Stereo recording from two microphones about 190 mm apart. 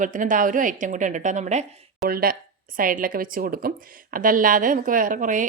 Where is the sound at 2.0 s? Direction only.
50° right (ahead or behind).